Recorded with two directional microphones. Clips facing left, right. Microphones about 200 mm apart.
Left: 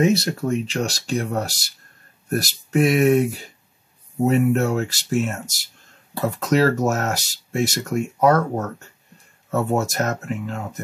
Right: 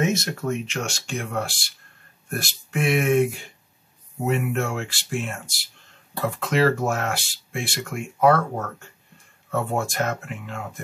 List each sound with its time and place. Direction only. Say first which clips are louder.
0.0 s speech: left 5 dB; 35° left (ahead or behind)